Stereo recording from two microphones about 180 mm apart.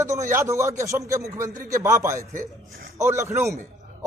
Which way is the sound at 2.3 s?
55° right (ahead or behind).